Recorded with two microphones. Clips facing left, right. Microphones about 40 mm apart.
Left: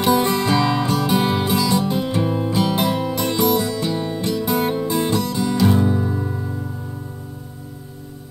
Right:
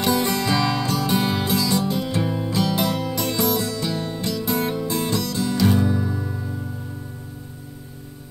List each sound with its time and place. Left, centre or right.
0.0 s music: centre